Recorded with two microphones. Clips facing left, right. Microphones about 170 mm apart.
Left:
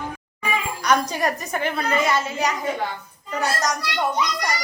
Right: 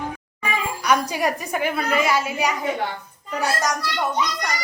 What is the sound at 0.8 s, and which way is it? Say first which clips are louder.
A woman's voice: even; 10° right (ahead or behind).